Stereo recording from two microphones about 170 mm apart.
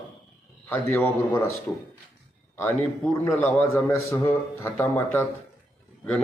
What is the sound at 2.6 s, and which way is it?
A man's voice, 15° left (ahead or behind).